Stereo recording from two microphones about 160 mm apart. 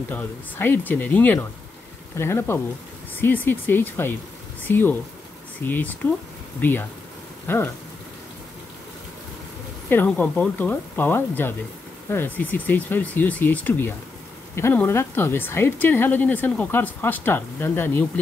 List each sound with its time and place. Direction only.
0.1 s speech: 10° left (ahead or behind)
9.8 s speech: 10° left (ahead or behind)